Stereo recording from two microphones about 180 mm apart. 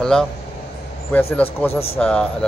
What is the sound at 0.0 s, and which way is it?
Speech, 5° left (ahead or behind).